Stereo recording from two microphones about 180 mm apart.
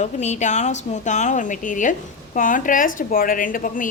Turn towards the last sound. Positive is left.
turn(degrees=50)  # may be behind; listen again after turning